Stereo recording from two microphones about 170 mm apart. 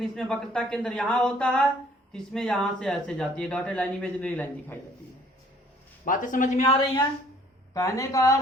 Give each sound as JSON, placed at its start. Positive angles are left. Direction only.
{"t": 0.0, "sound": "speech", "side_deg": 0}
{"t": 6.1, "sound": "speech", "side_deg": 50}
{"t": 7.7, "sound": "speech", "side_deg": 20}